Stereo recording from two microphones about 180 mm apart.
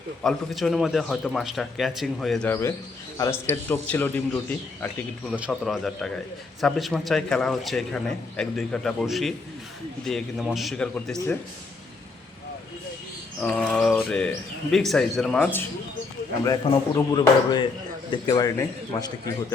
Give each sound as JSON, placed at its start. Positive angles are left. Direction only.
{"t": 0.2, "sound": "a man's voice", "side_deg": 0}
{"t": 2.5, "sound": "a man's voice", "side_deg": 15}
{"t": 13.4, "sound": "a man's voice", "side_deg": 5}
{"t": 16.6, "sound": "a man's voice", "side_deg": 25}